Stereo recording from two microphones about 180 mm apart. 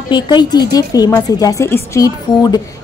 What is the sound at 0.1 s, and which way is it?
A woman's voice, 25° left (ahead or behind).